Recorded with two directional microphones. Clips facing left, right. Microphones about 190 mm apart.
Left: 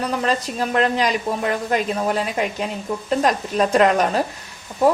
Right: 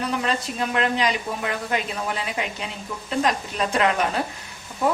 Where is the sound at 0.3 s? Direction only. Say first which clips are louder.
Left 4 dB; 40° left (ahead or behind).